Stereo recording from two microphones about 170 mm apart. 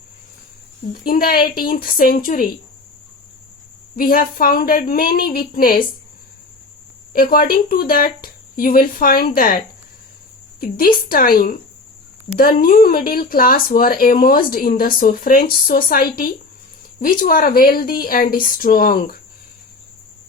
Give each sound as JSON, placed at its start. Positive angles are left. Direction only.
{"t": 1.0, "sound": "speech", "side_deg": 60}
{"t": 3.9, "sound": "speech", "side_deg": 60}
{"t": 7.1, "sound": "speech", "side_deg": 60}